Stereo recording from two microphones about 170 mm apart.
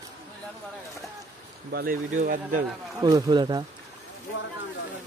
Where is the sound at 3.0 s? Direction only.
20° right (ahead or behind).